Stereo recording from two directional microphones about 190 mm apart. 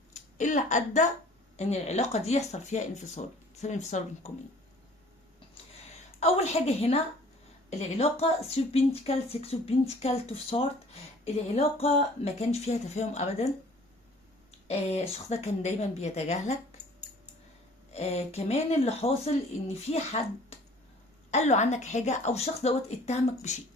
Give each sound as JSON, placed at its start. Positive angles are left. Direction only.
{"t": 0.1, "sound": "a sound", "side_deg": 40}
{"t": 1.5, "sound": "speech", "side_deg": 35}
{"t": 6.1, "sound": "speech", "side_deg": 35}
{"t": 14.7, "sound": "speech", "side_deg": 35}
{"t": 17.9, "sound": "speech", "side_deg": 35}